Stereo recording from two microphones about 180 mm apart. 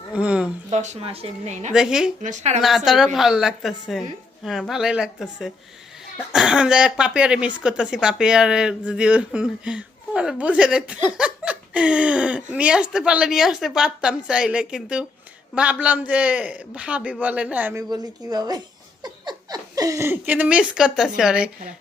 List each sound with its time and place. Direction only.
0.1 s a sound: 5° right (ahead or behind)
0.7 s a woman's voice: 40° right (ahead or behind)
1.7 s speech: 5° right (ahead or behind)
2.2 s a woman's voice: 40° right (ahead or behind)
2.6 s a man's voice: centre (ahead or behind)
17.8 s speech: 20° right (ahead or behind); by 21.5 s 5° right (ahead or behind)